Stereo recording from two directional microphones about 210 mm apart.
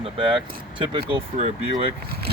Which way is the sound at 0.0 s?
25° right (ahead or behind).